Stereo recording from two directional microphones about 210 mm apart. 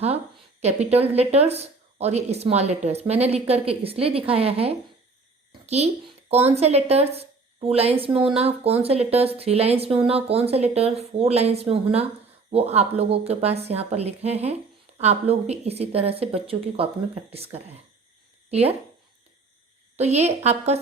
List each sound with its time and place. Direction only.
0.6 s a child's voice: 30° right (ahead or behind)
20.0 s a woman's voice: 30° right (ahead or behind)